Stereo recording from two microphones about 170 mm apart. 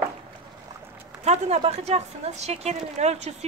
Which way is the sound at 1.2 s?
40° right (ahead or behind).